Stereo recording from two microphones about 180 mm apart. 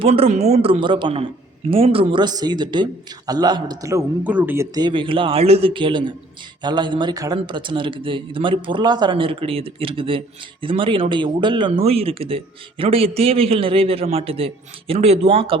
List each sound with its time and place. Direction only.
0.0 s a man's voice: 35° right (ahead or behind)